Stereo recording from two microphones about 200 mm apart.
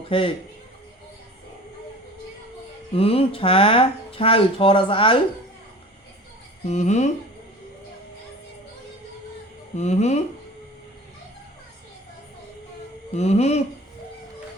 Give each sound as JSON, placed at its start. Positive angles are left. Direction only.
{"t": 0.1, "sound": "speech", "side_deg": 25}
{"t": 2.9, "sound": "speech", "side_deg": 30}
{"t": 6.7, "sound": "speech", "side_deg": 35}
{"t": 9.7, "sound": "speech", "side_deg": 35}
{"t": 13.1, "sound": "speech", "side_deg": 30}